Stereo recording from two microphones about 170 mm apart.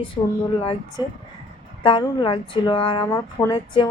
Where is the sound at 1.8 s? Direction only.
30° left (ahead or behind).